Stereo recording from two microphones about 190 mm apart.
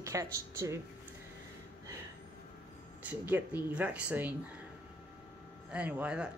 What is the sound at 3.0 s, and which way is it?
A woman's voice, 10° right (ahead or behind).